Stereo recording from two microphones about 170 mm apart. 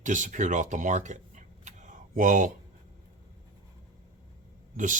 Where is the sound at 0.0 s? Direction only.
50° right (ahead or behind).